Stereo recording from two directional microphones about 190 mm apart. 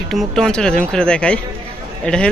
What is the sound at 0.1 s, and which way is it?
A man's voice, centre (ahead or behind).